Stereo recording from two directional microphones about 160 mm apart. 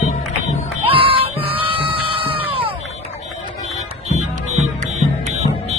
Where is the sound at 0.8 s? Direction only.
35° right (ahead or behind).